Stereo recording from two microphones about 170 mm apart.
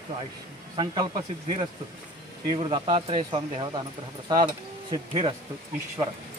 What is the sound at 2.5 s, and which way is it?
Speech, 30° right (ahead or behind).